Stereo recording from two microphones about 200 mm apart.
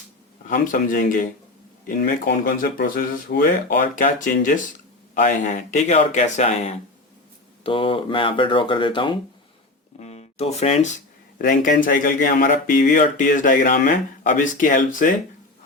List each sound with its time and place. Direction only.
0.4 s speech: 40° left (ahead or behind)